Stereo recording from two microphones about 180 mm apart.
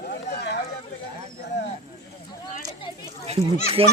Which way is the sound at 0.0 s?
65° left (ahead or behind).